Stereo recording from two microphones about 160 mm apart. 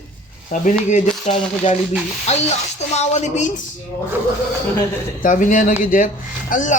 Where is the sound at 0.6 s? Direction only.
50° left (ahead or behind).